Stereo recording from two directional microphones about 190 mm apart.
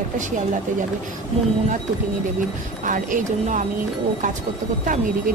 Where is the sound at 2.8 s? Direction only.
45° right (ahead or behind).